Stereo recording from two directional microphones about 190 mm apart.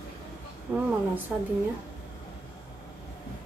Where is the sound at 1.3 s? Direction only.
10° right (ahead or behind).